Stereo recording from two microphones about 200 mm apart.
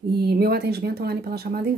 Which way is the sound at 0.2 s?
50° right (ahead or behind).